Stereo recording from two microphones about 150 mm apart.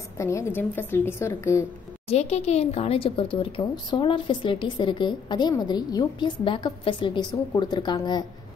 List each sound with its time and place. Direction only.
0.2 s a woman's voice: 20° left (ahead or behind)
2.0 s speech: 45° left (ahead or behind); by 8.3 s 30° left (ahead or behind)